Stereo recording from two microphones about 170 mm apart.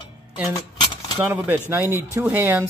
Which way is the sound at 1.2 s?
10° right (ahead or behind).